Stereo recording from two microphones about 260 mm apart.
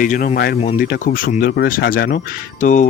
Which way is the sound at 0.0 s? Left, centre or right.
Left.